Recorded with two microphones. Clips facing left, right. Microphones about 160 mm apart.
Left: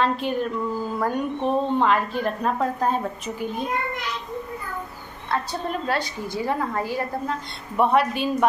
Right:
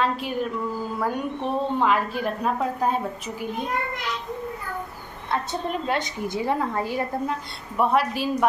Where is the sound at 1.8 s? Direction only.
5° right (ahead or behind).